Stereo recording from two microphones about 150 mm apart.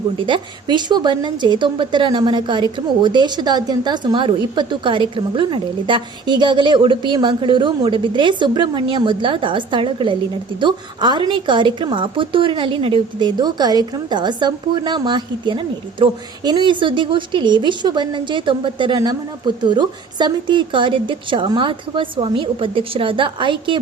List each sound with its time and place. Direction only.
0.2 s a woman's voice: 35° right (ahead or behind)